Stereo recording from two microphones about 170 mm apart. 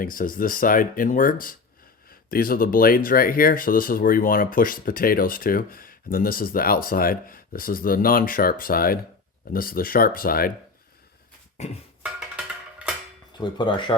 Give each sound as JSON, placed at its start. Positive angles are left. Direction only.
{"t": 0.0, "sound": "speech", "side_deg": 55}
{"t": 11.6, "sound": "a sound", "side_deg": 40}
{"t": 13.4, "sound": "speech", "side_deg": 30}